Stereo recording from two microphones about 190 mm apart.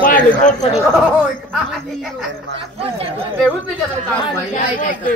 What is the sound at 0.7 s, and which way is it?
Speech, 5° right (ahead or behind).